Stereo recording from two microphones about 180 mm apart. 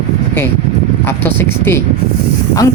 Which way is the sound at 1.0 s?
10° left (ahead or behind).